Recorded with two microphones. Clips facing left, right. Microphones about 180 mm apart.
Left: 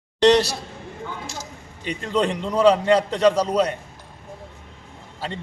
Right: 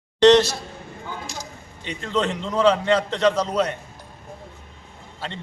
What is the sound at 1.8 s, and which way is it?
A man's voice, 10° left (ahead or behind).